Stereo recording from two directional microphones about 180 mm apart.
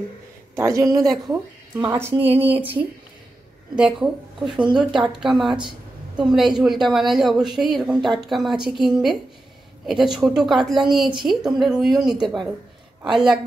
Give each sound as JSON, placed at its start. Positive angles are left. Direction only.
{"t": 0.6, "sound": "a woman's voice", "side_deg": -20}
{"t": 3.7, "sound": "a woman's voice", "side_deg": -5}